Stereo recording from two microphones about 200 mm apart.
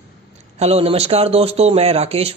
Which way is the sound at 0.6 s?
30° right (ahead or behind).